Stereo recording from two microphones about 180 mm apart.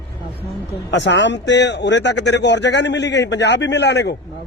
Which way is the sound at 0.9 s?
80° left.